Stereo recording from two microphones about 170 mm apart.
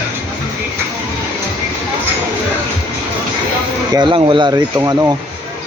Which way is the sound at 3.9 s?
25° right (ahead or behind).